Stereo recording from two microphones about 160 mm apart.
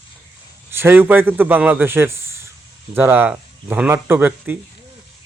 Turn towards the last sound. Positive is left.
turn(degrees=-10)  # may be behind; listen again after turning